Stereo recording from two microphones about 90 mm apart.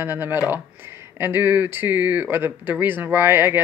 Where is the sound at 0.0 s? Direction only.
25° right (ahead or behind).